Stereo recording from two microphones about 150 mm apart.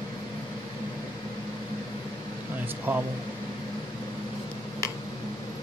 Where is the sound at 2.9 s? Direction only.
15° right (ahead or behind).